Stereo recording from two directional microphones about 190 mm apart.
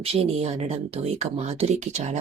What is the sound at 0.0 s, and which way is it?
A woman's voice, 30° right (ahead or behind).